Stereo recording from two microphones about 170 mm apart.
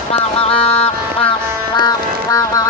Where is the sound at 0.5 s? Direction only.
35° left (ahead or behind).